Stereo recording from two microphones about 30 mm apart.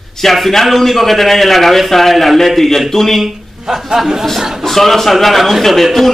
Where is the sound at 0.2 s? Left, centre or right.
Centre.